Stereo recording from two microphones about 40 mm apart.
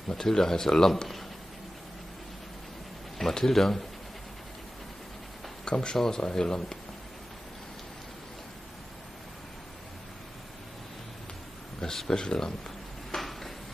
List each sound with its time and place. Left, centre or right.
0.1 s speech: centre
3.2 s speech: centre
5.7 s speech: left
11.8 s speech: centre
13.1 s a sound: centre